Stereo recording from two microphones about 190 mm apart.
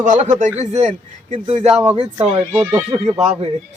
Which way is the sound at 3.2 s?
35° right (ahead or behind).